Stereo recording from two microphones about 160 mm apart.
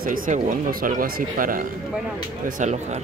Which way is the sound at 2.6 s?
50° right (ahead or behind).